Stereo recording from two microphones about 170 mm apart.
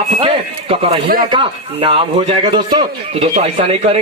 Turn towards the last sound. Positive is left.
turn(degrees=-35)  # may be behind; listen again after turning